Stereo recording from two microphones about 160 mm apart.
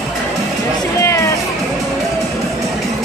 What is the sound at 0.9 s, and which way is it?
Music, 20° left (ahead or behind).